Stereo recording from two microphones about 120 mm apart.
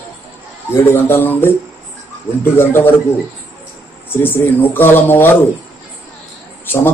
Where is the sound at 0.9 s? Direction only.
15° left (ahead or behind).